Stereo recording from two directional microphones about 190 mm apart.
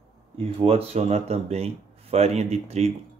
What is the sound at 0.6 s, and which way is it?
Speech, 30° right (ahead or behind).